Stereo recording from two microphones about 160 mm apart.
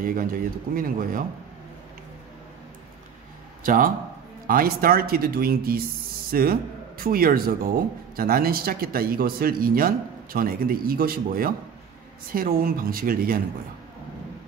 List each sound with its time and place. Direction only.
0.7 s speech: 60° right (ahead or behind)
3.6 s speech: 60° right (ahead or behind)